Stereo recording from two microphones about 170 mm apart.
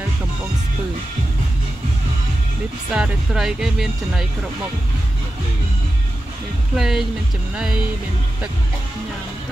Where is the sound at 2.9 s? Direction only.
5° right (ahead or behind).